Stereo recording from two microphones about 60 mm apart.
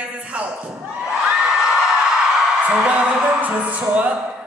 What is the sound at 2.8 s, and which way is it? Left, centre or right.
Music, right.